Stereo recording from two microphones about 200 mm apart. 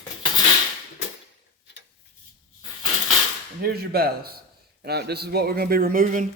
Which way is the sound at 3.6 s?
50° right (ahead or behind).